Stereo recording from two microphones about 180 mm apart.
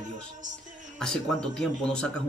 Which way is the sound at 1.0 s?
5° left (ahead or behind).